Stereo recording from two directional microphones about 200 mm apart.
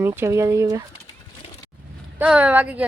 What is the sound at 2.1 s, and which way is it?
Speech, 5° right (ahead or behind).